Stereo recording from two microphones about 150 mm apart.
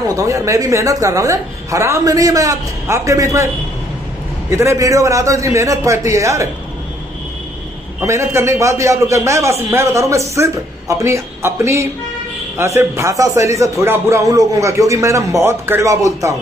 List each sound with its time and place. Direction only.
0.1 s a man's voice: 20° right (ahead or behind)
4.5 s a man's voice: 20° right (ahead or behind)
8.0 s a man's voice: 20° right (ahead or behind)